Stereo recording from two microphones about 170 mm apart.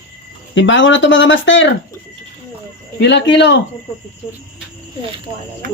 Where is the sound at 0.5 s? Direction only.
90° left.